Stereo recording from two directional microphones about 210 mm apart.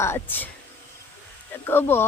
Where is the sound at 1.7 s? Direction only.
10° left (ahead or behind).